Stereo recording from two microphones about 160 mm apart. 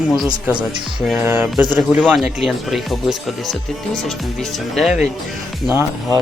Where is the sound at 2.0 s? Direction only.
Centre (ahead or behind).